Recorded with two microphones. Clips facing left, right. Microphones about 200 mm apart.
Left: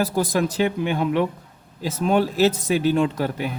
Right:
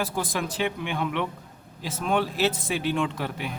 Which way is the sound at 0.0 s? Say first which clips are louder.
Left 7 dB; 40° left (ahead or behind).